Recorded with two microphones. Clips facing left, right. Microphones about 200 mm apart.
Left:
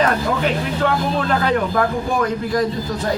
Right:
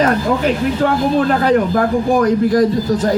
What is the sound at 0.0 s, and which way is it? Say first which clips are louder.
A man's voice: right 4 dB; 40° right (ahead or behind).